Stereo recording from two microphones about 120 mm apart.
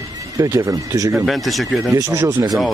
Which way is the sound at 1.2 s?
Centre (ahead or behind).